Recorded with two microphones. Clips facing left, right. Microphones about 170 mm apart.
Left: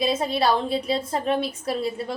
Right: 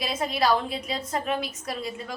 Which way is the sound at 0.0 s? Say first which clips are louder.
Left 4 dB; 25° left (ahead or behind).